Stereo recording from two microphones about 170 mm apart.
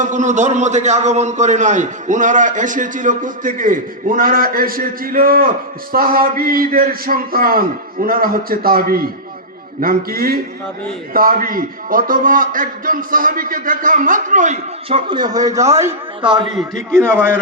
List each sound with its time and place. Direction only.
0.0 s a man's voice: 45° right (ahead or behind); by 16.0 s 15° right (ahead or behind)